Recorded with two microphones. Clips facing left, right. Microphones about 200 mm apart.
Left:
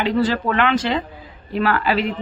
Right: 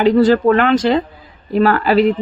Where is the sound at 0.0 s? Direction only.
45° right (ahead or behind).